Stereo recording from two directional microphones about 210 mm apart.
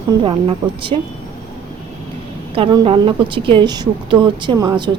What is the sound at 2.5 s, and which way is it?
A woman's voice, 25° right (ahead or behind).